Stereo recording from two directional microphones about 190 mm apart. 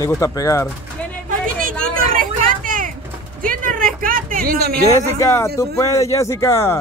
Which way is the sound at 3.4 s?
45° right (ahead or behind).